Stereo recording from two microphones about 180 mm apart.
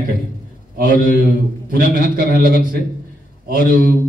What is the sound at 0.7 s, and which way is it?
Speech, 50° right (ahead or behind).